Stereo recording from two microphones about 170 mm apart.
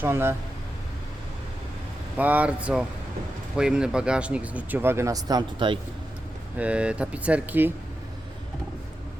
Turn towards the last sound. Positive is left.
turn(degrees=-10)  # may be behind; listen again after turning